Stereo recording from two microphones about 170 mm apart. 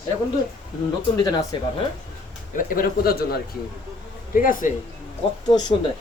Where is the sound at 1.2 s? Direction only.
25° left (ahead or behind).